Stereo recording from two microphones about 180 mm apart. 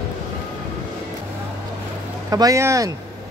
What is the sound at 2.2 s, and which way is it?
Speech, 20° right (ahead or behind).